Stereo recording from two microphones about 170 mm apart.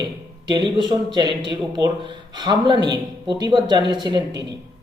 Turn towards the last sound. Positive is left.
turn(degrees=-25)  # may be behind; listen again after turning